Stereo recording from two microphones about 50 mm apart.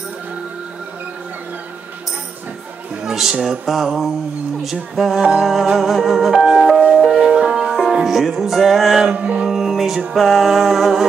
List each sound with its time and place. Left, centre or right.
3.0 s music: centre
5.2 s music: centre
5.8 s music: centre
9.1 s music: right
9.5 s music: centre